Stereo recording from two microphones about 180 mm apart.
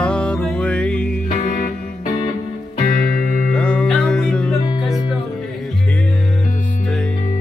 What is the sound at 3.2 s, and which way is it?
Music, 55° left (ahead or behind).